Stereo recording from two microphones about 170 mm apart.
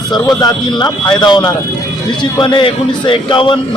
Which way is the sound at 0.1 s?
25° left (ahead or behind).